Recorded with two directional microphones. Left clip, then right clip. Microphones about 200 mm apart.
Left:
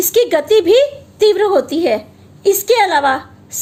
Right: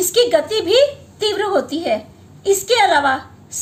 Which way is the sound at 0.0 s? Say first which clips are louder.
Left 1 dB; 45° left (ahead or behind).